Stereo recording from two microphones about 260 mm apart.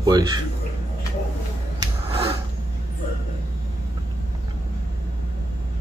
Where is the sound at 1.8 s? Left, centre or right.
Right.